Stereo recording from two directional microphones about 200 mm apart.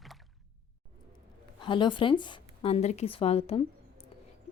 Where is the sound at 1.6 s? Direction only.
25° left (ahead or behind).